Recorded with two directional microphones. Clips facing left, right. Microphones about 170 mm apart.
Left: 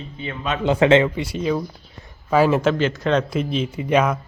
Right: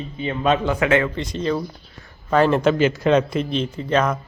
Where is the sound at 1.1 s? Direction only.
10° left (ahead or behind).